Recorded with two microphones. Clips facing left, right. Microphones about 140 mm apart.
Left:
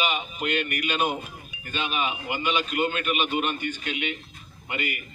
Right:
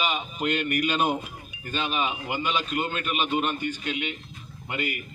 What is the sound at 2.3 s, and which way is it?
A man's voice, 30° right (ahead or behind).